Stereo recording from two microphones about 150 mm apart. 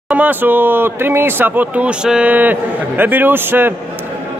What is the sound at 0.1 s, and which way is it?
Speech, 10° right (ahead or behind).